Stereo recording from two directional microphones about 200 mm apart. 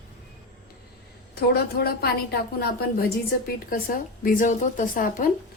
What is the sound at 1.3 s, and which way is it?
A woman's voice, 50° left (ahead or behind).